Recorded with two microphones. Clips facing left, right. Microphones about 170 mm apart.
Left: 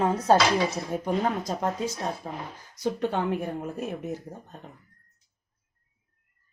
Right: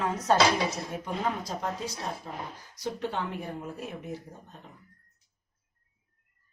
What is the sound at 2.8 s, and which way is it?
Speech, 50° left (ahead or behind).